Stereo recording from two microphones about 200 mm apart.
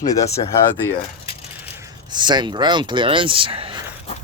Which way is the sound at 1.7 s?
15° right (ahead or behind).